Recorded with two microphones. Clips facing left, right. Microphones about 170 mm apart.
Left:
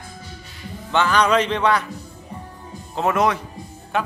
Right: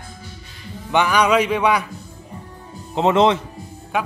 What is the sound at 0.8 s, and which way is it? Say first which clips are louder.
A man's voice: right 1 dB; 15° right (ahead or behind).